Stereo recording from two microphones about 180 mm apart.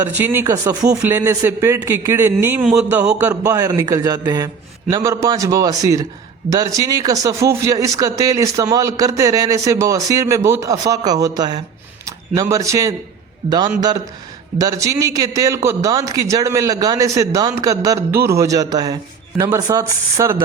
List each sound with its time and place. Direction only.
0.2 s speech: 15° right (ahead or behind)